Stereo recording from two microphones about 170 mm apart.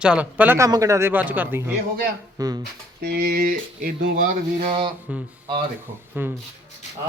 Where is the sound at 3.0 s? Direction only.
65° right (ahead or behind).